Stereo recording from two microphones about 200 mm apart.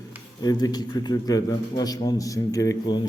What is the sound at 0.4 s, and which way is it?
A man's voice, 20° left (ahead or behind).